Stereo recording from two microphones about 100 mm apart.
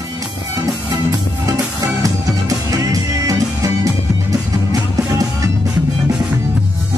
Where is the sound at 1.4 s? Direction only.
35° right (ahead or behind).